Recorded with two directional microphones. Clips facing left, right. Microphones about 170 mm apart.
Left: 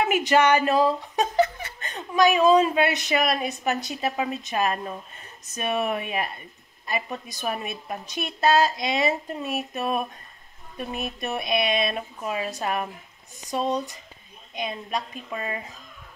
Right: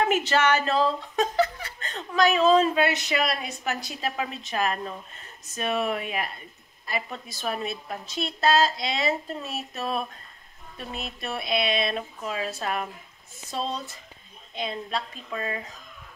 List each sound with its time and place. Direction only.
0.0 s a woman's voice: 10° left (ahead or behind)